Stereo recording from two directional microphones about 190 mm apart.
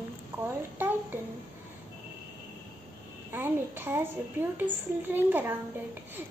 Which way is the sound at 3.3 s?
10° right (ahead or behind).